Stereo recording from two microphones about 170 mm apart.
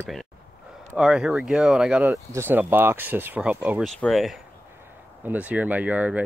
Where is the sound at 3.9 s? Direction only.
Centre (ahead or behind).